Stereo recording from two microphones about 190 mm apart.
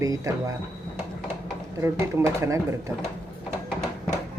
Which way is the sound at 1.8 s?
15° right (ahead or behind).